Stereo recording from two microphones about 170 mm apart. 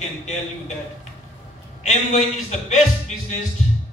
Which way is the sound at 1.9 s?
50° left (ahead or behind).